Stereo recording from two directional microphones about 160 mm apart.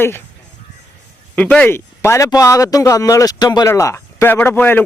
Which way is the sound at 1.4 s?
10° left (ahead or behind).